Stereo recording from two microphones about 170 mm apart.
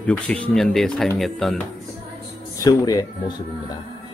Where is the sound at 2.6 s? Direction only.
20° left (ahead or behind).